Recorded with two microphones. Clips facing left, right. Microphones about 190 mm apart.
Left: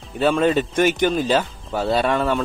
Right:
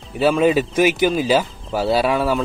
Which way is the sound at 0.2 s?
5° right (ahead or behind).